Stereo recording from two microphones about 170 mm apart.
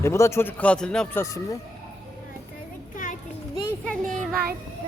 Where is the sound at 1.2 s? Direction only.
15° left (ahead or behind).